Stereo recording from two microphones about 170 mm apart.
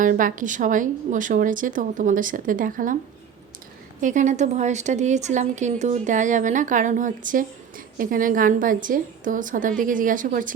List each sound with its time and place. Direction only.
0.0 s a woman's voice: 50° right (ahead or behind)
4.0 s a woman's voice: 45° right (ahead or behind)